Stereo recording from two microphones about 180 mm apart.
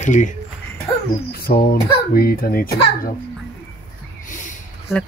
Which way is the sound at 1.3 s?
55° left (ahead or behind).